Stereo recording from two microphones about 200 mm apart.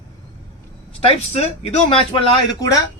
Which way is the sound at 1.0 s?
30° left (ahead or behind).